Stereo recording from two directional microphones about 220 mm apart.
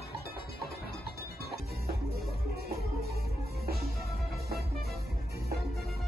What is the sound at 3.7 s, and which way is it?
Music, 45° right (ahead or behind).